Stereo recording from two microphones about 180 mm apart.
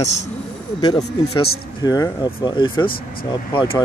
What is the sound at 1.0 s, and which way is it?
Speech, 35° left (ahead or behind).